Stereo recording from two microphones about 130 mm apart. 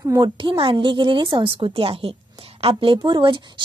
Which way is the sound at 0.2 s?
40° right (ahead or behind).